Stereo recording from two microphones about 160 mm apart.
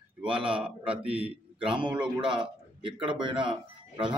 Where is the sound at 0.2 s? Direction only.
5° right (ahead or behind).